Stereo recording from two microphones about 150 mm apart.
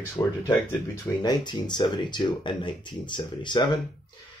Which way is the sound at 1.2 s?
30° left (ahead or behind).